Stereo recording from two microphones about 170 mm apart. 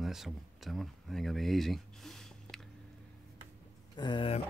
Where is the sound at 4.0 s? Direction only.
25° left (ahead or behind).